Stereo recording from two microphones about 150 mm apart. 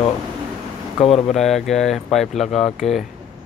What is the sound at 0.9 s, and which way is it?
Speech, 45° left (ahead or behind).